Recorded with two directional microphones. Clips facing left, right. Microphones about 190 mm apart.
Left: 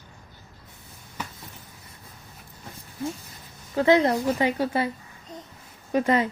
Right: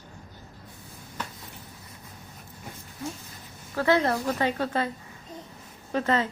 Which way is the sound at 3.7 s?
20° left (ahead or behind).